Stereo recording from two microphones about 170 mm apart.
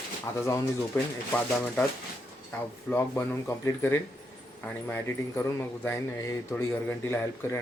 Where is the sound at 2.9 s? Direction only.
15° left (ahead or behind).